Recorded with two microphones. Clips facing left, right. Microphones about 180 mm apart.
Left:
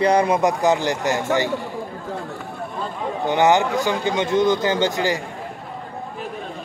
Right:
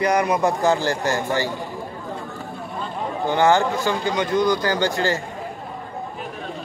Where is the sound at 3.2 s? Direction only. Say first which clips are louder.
Left 1 dB; 20° left (ahead or behind).